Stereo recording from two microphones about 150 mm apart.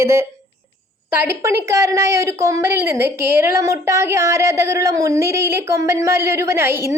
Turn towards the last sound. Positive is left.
turn(degrees=-15)  # may be behind; listen again after turning